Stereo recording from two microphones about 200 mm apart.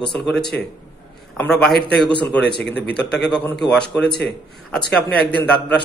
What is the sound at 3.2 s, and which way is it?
Speech, 5° left (ahead or behind).